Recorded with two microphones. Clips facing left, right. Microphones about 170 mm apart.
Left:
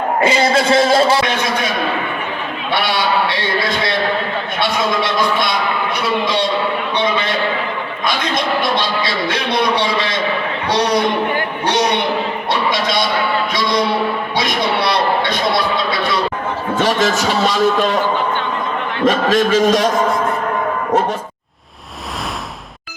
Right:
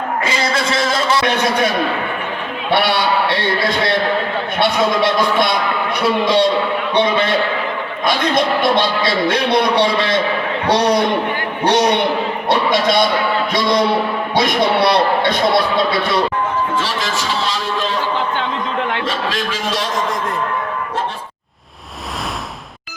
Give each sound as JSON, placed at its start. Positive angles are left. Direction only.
{"t": 0.2, "sound": "a man's voice", "side_deg": 30}
{"t": 2.7, "sound": "a sound", "side_deg": -55}
{"t": 8.0, "sound": "speech", "side_deg": -55}
{"t": 11.6, "sound": "speech", "side_deg": -55}
{"t": 12.5, "sound": "music", "side_deg": -55}
{"t": 14.3, "sound": "speech", "side_deg": -55}
{"t": 16.7, "sound": "speech", "side_deg": 40}
{"t": 19.0, "sound": "speech", "side_deg": 45}